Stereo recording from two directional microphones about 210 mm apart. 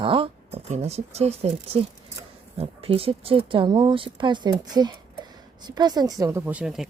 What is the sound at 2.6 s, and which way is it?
Speech, 25° right (ahead or behind).